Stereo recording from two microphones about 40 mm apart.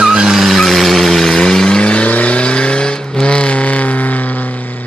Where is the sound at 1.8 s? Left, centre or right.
Left.